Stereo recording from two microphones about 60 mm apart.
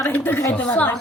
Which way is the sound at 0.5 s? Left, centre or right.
Left.